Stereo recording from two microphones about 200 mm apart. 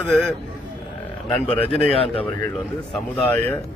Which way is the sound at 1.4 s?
30° left (ahead or behind).